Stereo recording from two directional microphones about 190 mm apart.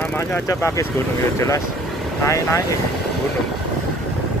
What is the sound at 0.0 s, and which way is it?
Speech, 10° left (ahead or behind).